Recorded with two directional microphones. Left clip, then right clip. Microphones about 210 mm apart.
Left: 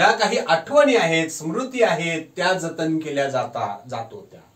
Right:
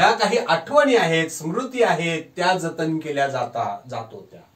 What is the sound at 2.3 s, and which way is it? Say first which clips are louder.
Speech: right 1 dB; 25° left (ahead or behind).